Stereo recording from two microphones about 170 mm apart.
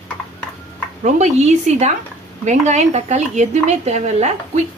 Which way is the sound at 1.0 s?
40° right (ahead or behind).